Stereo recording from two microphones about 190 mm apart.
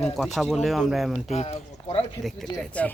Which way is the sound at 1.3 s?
35° left (ahead or behind).